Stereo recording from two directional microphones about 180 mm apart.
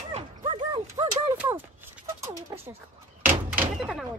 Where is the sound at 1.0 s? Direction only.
30° right (ahead or behind).